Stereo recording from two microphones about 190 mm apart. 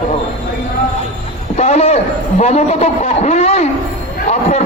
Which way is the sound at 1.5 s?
35° left (ahead or behind).